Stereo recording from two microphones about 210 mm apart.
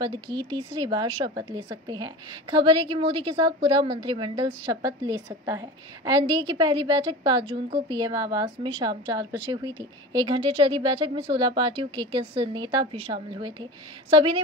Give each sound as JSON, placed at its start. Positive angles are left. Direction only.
{"t": 0.4, "sound": "a woman's voice", "side_deg": -20}